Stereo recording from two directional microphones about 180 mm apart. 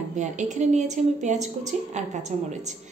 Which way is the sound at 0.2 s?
40° right (ahead or behind).